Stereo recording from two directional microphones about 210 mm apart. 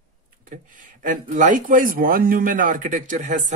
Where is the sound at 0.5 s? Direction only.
40° right (ahead or behind).